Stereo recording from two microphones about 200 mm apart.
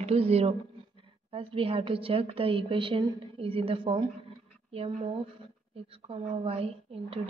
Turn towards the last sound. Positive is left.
turn(degrees=-30)  # may be behind; listen again after turning